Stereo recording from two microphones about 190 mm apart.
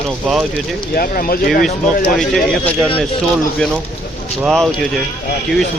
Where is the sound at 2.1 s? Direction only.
5° left (ahead or behind).